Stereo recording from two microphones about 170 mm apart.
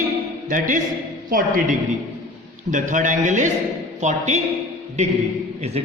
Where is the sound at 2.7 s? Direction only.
50° right (ahead or behind).